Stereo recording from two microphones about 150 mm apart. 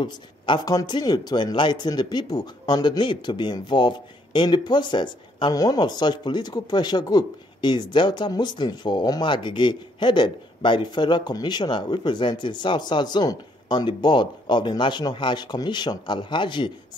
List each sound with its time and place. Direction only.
0.0 s speech: 25° left (ahead or behind)